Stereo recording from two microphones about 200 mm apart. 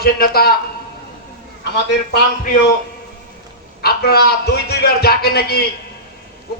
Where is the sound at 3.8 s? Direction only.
50° left (ahead or behind).